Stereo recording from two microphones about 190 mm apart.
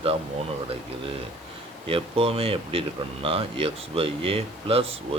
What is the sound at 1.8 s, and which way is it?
Speech, 30° right (ahead or behind).